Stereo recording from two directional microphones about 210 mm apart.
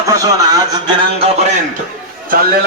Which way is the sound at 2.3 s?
45° right (ahead or behind).